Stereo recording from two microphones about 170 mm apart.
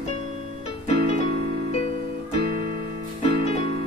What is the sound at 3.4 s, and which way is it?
Music, 40° left (ahead or behind).